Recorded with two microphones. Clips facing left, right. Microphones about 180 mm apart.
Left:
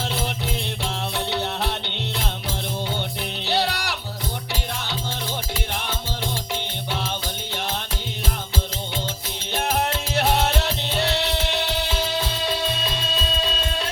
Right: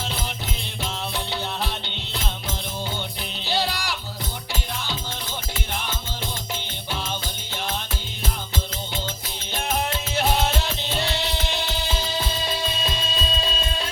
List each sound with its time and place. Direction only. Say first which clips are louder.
1.1 s music: left 3 dB; 65° left (ahead or behind)
3.4 s music: left 2 dB; 65° left (ahead or behind)
9.6 s music: left 2 dB; 65° left (ahead or behind)